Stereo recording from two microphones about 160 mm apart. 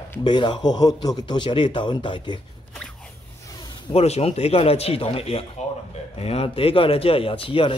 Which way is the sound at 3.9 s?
40° left (ahead or behind).